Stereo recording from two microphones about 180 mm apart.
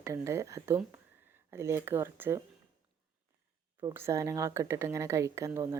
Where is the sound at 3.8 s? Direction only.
20° right (ahead or behind).